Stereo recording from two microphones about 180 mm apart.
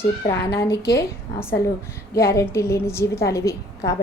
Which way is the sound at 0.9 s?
15° left (ahead or behind).